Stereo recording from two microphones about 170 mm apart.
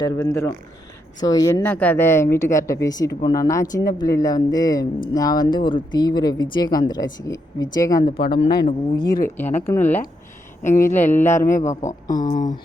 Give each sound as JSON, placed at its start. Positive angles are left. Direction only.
{"t": 0.3, "sound": "speech", "side_deg": 15}
{"t": 8.1, "sound": "speech", "side_deg": 30}
{"t": 9.4, "sound": "speech", "side_deg": 15}
{"t": 10.6, "sound": "speech", "side_deg": 50}
{"t": 11.8, "sound": "speech", "side_deg": 20}
{"t": 12.2, "sound": "speech", "side_deg": 50}